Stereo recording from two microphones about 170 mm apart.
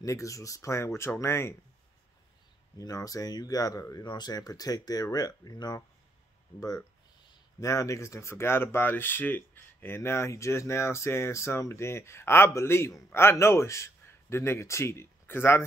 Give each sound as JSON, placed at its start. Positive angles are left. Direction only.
{"t": 0.0, "sound": "speech", "side_deg": 20}
{"t": 2.8, "sound": "speech", "side_deg": 20}
{"t": 7.6, "sound": "speech", "side_deg": 20}